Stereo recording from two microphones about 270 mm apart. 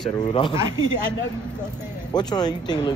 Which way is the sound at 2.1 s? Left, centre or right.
Centre.